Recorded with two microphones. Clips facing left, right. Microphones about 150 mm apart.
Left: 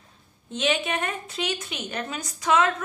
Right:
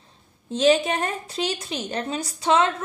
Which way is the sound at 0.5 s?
35° right (ahead or behind).